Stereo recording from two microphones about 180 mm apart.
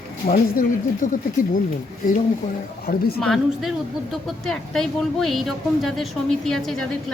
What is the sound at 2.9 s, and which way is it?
Speech, 60° left (ahead or behind).